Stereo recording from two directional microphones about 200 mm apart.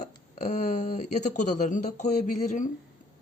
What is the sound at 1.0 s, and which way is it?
Speech, 35° left (ahead or behind).